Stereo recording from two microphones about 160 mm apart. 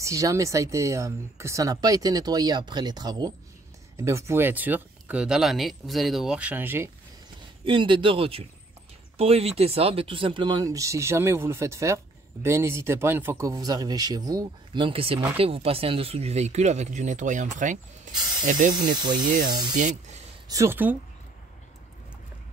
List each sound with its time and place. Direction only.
0.0 s speech: 20° right (ahead or behind)
7.6 s speech: 30° right (ahead or behind); by 18.8 s 55° right (ahead or behind)
18.8 s speech: 25° right (ahead or behind)
19.7 s speech: 50° right (ahead or behind)
20.4 s speech: 20° right (ahead or behind)